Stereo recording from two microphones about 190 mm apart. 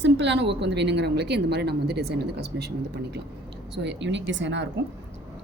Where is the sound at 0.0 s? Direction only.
65° right (ahead or behind).